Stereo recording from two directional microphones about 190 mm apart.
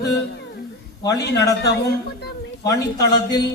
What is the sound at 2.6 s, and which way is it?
Speech, 20° left (ahead or behind).